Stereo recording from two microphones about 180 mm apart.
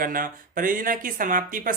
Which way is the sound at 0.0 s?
50° right (ahead or behind).